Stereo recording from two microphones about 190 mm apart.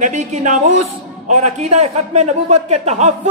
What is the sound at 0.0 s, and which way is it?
A man's voice, 40° right (ahead or behind).